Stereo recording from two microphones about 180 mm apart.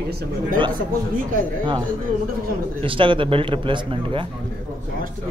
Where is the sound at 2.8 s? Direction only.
30° right (ahead or behind).